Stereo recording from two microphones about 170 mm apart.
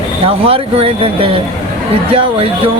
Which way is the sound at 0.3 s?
35° right (ahead or behind).